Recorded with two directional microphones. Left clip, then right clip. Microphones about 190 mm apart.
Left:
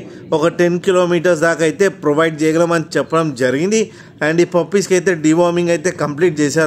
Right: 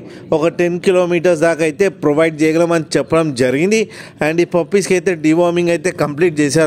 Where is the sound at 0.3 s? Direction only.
35° right (ahead or behind).